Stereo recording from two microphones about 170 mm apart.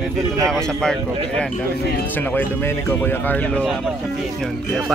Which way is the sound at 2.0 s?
10° left (ahead or behind).